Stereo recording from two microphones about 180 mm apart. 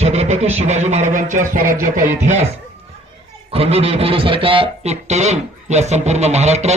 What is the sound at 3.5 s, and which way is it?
Speech, 35° right (ahead or behind).